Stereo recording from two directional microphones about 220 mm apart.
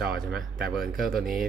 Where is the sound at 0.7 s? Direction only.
Centre (ahead or behind).